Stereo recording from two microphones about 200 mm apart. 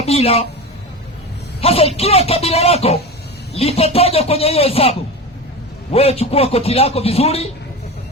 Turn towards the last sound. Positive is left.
turn(degrees=30)  # may be behind; listen again after turning